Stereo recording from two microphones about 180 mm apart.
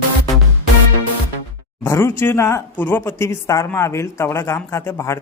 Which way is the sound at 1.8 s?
15° left (ahead or behind).